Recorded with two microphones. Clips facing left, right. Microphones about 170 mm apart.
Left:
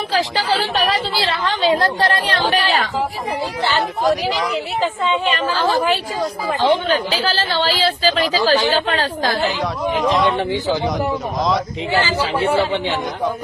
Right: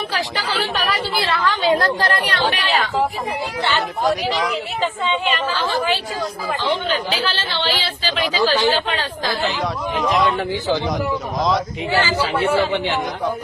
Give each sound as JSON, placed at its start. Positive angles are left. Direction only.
{"t": 0.5, "sound": "a woman's voice", "side_deg": 35}
{"t": 3.6, "sound": "speech", "side_deg": 0}
{"t": 5.2, "sound": "speech", "side_deg": 45}
{"t": 9.5, "sound": "speech", "side_deg": 20}
{"t": 10.0, "sound": "speech", "side_deg": 0}
{"t": 10.3, "sound": "speech", "side_deg": 25}
{"t": 11.3, "sound": "speech", "side_deg": 0}
{"t": 11.9, "sound": "speech", "side_deg": 20}